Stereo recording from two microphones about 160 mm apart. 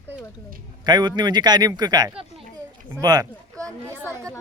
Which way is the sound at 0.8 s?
25° right (ahead or behind).